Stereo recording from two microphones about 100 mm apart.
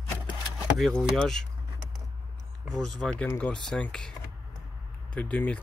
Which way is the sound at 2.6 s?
Centre (ahead or behind).